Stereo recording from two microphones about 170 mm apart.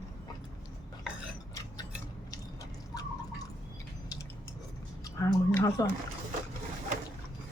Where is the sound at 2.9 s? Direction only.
20° left (ahead or behind).